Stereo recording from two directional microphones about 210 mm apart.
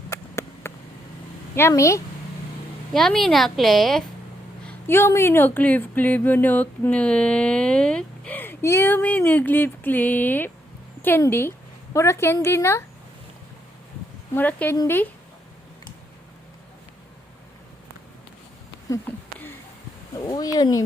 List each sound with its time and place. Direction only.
0.1 s a sound: 15° left (ahead or behind)
1.5 s speech: 10° left (ahead or behind)
2.9 s a woman's voice: centre (ahead or behind)
4.6 s speech: 10° left (ahead or behind)
14.3 s speech: 10° left (ahead or behind)
18.9 s a sound: 10° left (ahead or behind)
20.1 s speech: 20° left (ahead or behind)